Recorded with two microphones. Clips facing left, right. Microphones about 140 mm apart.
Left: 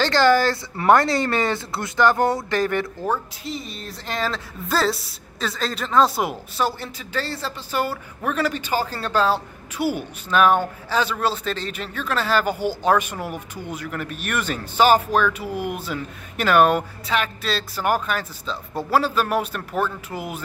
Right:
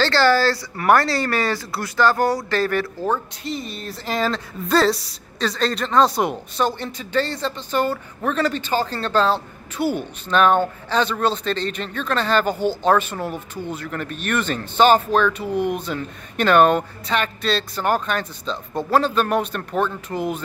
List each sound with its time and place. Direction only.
0.0 s speech: 15° left (ahead or behind)
3.1 s a woman's voice: centre (ahead or behind)